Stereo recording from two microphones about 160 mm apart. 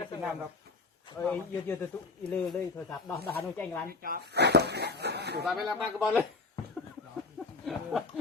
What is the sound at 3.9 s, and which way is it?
Speech, 65° right (ahead or behind).